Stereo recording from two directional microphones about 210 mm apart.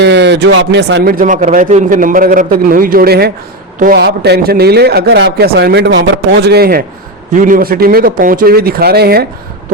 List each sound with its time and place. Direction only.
0.0 s a man's voice: 55° right (ahead or behind)